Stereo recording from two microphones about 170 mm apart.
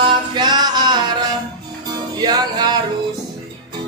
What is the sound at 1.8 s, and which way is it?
Music, 25° right (ahead or behind).